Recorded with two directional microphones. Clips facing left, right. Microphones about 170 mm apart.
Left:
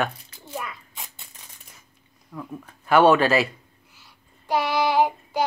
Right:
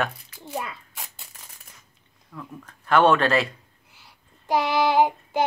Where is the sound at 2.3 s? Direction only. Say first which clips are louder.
Left 4 dB; 10° left (ahead or behind).